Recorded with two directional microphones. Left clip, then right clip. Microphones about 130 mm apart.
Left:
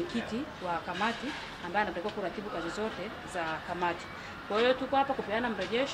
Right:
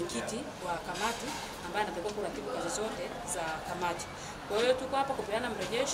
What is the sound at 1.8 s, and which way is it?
Speech, 35° right (ahead or behind).